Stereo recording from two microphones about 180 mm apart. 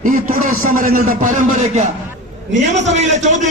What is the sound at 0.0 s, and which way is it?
A man's voice, 50° right (ahead or behind).